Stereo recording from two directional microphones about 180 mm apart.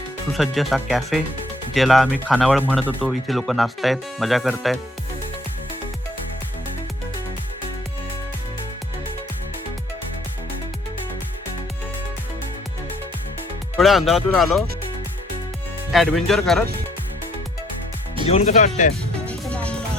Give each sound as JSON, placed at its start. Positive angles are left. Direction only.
{"t": 0.3, "sound": "speech", "side_deg": 0}
{"t": 2.6, "sound": "speech", "side_deg": -5}
{"t": 13.7, "sound": "speech", "side_deg": 0}
{"t": 15.9, "sound": "speech", "side_deg": 0}
{"t": 18.3, "sound": "speech", "side_deg": 35}
{"t": 19.2, "sound": "music", "side_deg": 5}